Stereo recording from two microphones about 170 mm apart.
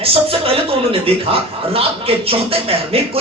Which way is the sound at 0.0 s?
35° right (ahead or behind).